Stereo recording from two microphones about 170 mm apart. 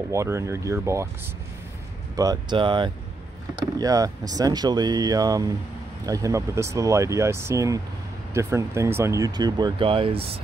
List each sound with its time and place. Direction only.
0.1 s speech: 15° right (ahead or behind)
2.1 s speech: 25° right (ahead or behind)